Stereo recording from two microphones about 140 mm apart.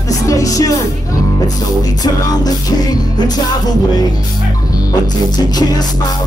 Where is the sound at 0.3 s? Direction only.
25° left (ahead or behind).